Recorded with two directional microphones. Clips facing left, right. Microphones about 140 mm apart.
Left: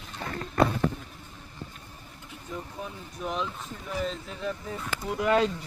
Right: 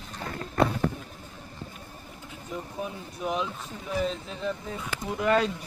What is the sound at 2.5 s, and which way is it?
Speech, 15° right (ahead or behind).